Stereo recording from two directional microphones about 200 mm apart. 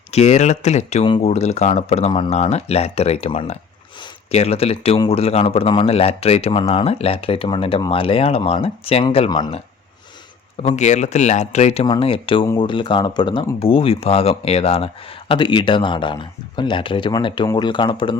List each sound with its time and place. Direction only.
0.1 s speech: 35° left (ahead or behind)
10.6 s speech: 35° left (ahead or behind)